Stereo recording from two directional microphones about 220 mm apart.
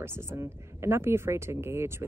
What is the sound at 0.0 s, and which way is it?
Speech, 10° right (ahead or behind).